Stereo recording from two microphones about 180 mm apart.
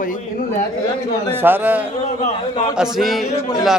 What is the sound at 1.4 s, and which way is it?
A man's voice, 10° right (ahead or behind).